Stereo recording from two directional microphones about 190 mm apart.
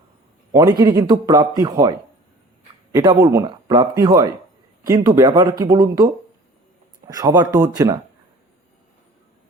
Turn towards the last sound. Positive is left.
turn(degrees=-20)  # may be behind; listen again after turning